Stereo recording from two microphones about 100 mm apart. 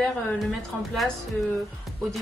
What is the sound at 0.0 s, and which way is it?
Speech, 5° left (ahead or behind).